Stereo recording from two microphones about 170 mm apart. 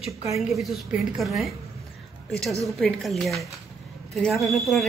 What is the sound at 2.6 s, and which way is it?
A woman's voice, centre (ahead or behind).